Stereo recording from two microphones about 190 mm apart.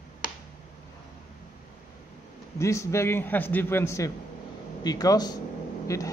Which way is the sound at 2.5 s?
15° left (ahead or behind).